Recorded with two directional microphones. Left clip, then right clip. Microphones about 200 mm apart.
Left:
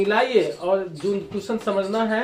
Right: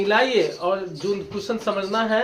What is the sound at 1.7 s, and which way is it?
Speech, 5° right (ahead or behind).